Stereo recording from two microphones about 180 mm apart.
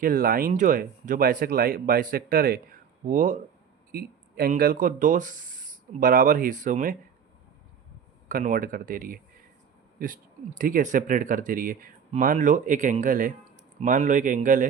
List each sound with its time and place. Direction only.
0.0 s speech: 50° right (ahead or behind)
8.3 s speech: 50° right (ahead or behind)
10.6 s speech: 50° right (ahead or behind)